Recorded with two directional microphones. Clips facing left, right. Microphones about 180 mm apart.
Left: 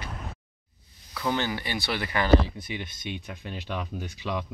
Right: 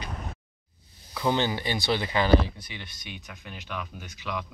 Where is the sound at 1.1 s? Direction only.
20° right (ahead or behind).